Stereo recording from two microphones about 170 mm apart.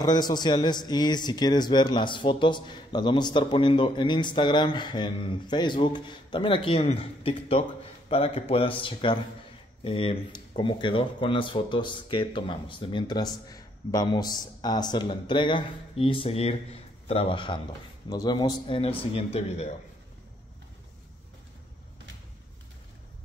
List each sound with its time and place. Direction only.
0.0 s speech: 25° left (ahead or behind)